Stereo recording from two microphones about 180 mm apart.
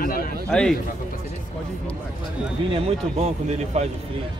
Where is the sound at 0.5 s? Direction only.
5° left (ahead or behind).